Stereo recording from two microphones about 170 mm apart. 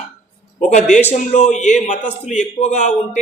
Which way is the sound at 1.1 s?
45° left (ahead or behind).